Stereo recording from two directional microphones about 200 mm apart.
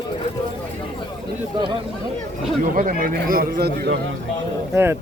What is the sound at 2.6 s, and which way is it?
A man's voice, 40° right (ahead or behind).